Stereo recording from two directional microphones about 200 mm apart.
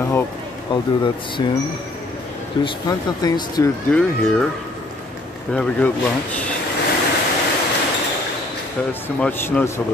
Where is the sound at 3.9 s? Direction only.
5° left (ahead or behind).